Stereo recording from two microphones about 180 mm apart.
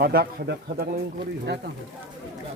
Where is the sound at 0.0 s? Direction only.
60° right (ahead or behind).